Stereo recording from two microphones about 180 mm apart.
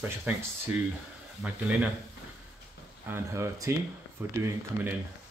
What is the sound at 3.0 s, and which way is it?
Speech, 15° right (ahead or behind).